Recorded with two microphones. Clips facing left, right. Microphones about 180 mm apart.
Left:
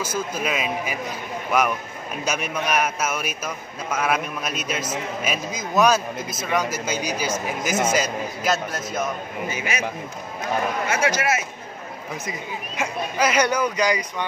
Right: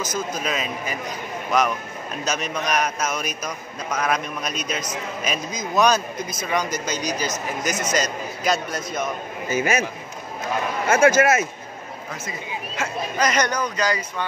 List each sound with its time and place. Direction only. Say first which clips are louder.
0.0 s a man's voice: left 1 dB; 10° left (ahead or behind)
9.5 s speech: right 9 dB; 45° right (ahead or behind)
10.9 s speech: right 9 dB; 50° right (ahead or behind)
12.3 s a man's voice: even; 15° left (ahead or behind)